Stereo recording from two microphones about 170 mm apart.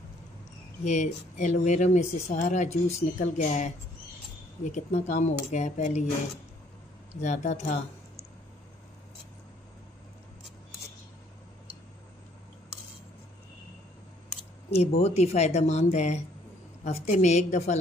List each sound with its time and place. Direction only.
0.8 s speech: 45° left (ahead or behind)
7.2 s speech: 40° left (ahead or behind)
14.8 s speech: 40° left (ahead or behind)